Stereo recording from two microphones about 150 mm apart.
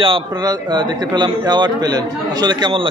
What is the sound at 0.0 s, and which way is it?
A man's voice, 30° right (ahead or behind).